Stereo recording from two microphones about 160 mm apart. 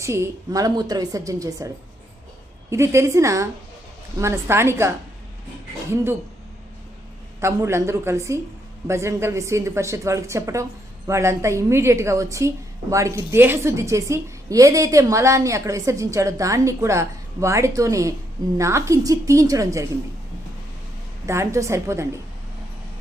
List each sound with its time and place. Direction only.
0.0 s a woman's voice: 15° right (ahead or behind)
7.4 s a woman's voice: 15° right (ahead or behind)
21.2 s a woman's voice: 20° right (ahead or behind)